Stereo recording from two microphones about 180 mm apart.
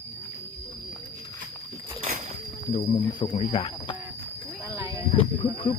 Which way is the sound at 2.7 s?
30° left (ahead or behind).